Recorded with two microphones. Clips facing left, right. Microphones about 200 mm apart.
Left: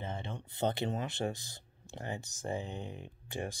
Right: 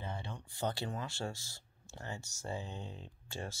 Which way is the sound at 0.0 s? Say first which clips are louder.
Left 3 dB; 20° left (ahead or behind).